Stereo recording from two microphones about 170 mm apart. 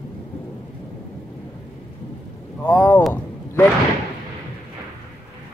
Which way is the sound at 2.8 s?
10° left (ahead or behind).